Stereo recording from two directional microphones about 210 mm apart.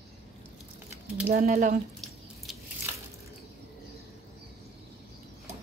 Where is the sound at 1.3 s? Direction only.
40° right (ahead or behind).